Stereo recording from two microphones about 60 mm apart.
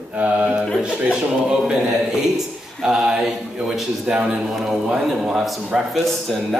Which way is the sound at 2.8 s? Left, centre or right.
Centre.